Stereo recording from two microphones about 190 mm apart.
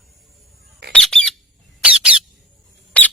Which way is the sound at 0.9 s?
5° left (ahead or behind).